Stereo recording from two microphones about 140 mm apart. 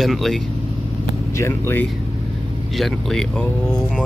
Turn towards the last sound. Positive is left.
turn(degrees=5)  # may be behind; listen again after turning